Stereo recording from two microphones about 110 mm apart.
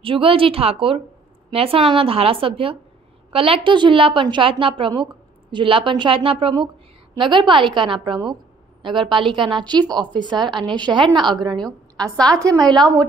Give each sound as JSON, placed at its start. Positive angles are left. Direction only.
{"t": 0.0, "sound": "a woman's voice", "side_deg": -55}
{"t": 11.6, "sound": "a woman's voice", "side_deg": 5}
{"t": 12.4, "sound": "a woman's voice", "side_deg": -30}